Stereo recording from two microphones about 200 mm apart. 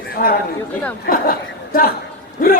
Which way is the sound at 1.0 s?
45° left (ahead or behind).